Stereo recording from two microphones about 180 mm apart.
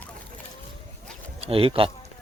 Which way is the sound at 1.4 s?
30° right (ahead or behind).